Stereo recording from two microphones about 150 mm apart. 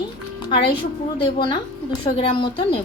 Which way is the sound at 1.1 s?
35° left (ahead or behind).